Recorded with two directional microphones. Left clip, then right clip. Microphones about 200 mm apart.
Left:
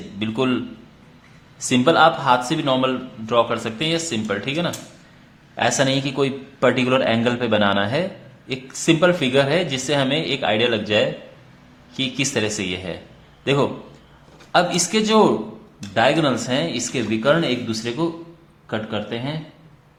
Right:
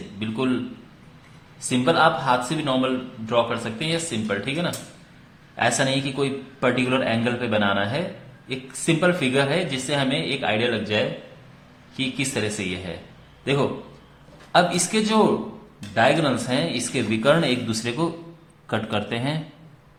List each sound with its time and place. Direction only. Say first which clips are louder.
0.2 s a man's voice: left 4 dB; 35° left (ahead or behind)
1.5 s a man's voice: left 4 dB; 30° left (ahead or behind); by 19.4 s centre (ahead or behind)